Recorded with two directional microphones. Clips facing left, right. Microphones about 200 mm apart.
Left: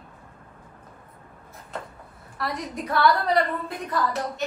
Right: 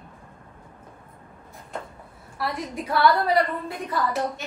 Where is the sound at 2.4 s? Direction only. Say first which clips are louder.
Right 1 dB; centre (ahead or behind).